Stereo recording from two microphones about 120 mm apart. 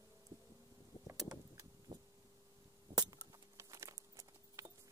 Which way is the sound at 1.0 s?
30° right (ahead or behind).